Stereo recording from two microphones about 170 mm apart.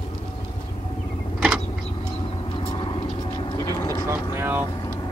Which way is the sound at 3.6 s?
20° left (ahead or behind).